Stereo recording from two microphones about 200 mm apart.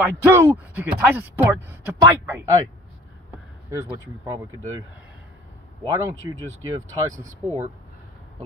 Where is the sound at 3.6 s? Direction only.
10° right (ahead or behind).